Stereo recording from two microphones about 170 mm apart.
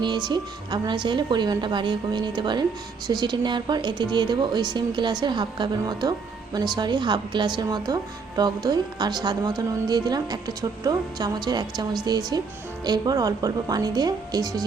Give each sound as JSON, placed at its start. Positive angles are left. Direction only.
{"t": 0.0, "sound": "speech", "side_deg": -25}